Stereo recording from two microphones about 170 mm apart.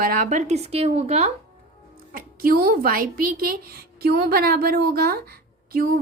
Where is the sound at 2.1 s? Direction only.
60° right (ahead or behind).